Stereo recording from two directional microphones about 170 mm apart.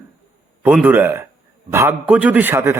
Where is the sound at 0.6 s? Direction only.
10° right (ahead or behind).